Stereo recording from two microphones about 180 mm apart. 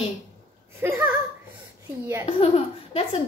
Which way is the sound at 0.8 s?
10° right (ahead or behind).